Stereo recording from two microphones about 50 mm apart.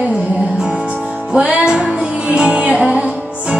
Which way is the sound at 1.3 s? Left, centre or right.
Right.